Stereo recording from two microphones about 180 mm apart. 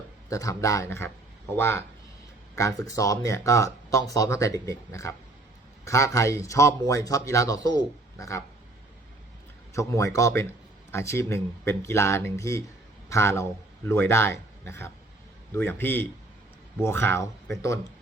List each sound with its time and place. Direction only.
0.3 s speech: 20° left (ahead or behind)
9.7 s a man's voice: 15° left (ahead or behind)